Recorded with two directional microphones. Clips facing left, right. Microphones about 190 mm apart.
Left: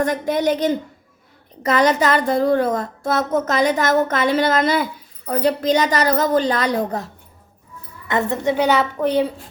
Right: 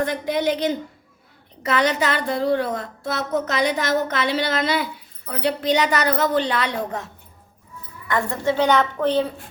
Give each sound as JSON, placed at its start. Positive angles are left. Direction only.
{"t": 0.0, "sound": "a woman's voice", "side_deg": 45}
{"t": 8.0, "sound": "a woman's voice", "side_deg": 20}